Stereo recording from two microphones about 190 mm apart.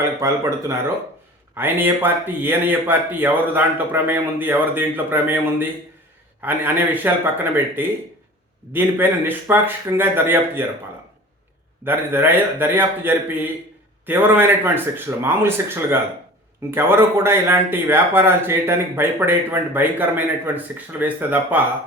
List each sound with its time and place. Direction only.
0.0 s speech: 15° right (ahead or behind)
11.9 s speech: 10° right (ahead or behind)